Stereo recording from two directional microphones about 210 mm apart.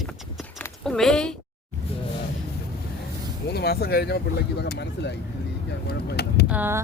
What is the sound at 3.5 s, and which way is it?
Speech, 50° left (ahead or behind).